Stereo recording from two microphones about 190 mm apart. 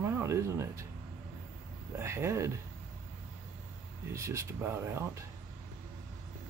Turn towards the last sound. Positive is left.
turn(degrees=-15)  # may be behind; listen again after turning